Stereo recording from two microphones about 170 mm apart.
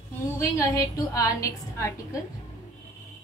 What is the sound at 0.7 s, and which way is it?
A woman's voice, 20° left (ahead or behind).